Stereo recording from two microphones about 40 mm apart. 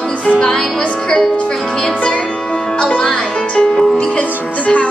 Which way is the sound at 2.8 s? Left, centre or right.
Left.